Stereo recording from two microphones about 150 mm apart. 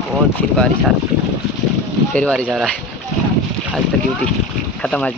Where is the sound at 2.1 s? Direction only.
10° left (ahead or behind).